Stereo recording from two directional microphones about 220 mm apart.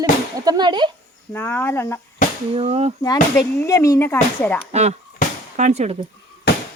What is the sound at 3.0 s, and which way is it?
Speech, 15° left (ahead or behind).